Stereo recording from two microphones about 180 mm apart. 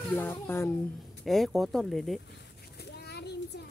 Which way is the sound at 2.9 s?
70° left (ahead or behind).